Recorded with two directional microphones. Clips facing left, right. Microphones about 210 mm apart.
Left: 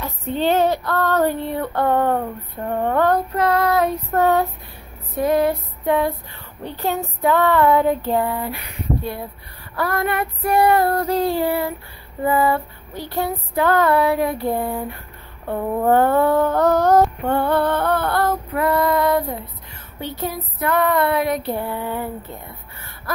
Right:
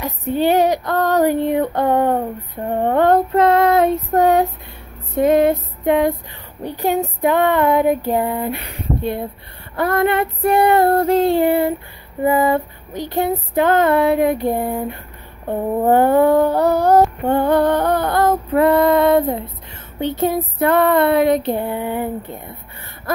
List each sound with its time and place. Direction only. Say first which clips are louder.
0.0 s female singing: right 4 dB; 15° right (ahead or behind)
5.1 s a sound: right 4 dB; 25° right (ahead or behind)
6.6 s female singing: right 5 dB; 15° right (ahead or behind)
9.8 s female singing: right 5 dB; 20° right (ahead or behind)
15.4 s a sound: right 2 dB; 20° right (ahead or behind)
18.5 s female singing: right 7 dB; 25° right (ahead or behind)